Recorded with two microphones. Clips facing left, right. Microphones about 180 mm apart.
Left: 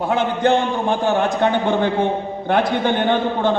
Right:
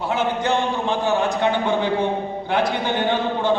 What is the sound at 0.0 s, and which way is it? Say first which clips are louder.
A man's voice: left 4 dB; 55° left (ahead or behind).